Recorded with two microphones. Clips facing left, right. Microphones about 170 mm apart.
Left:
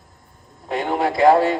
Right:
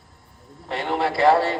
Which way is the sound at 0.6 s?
45° left (ahead or behind).